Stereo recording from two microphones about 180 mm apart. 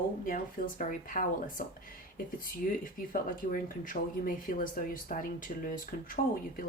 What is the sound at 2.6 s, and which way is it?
Speech, 50° left (ahead or behind).